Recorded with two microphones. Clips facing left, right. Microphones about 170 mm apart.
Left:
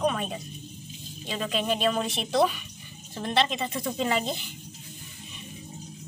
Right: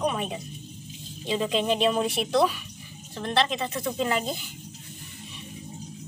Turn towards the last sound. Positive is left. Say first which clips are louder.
# even
turn(degrees=0)  # may be behind; listen again after turning